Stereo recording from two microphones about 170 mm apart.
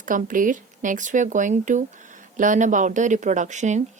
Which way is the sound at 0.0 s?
50° right (ahead or behind).